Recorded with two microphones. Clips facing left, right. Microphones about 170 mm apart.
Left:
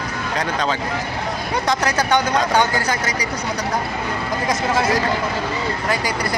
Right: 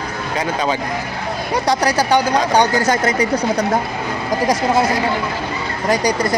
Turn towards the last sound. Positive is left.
turn(degrees=-40)  # may be behind; listen again after turning